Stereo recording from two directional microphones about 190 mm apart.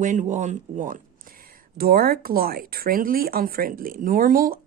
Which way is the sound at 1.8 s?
50° right (ahead or behind).